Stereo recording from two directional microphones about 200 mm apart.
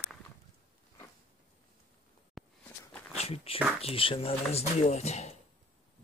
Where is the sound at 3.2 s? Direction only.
30° left (ahead or behind).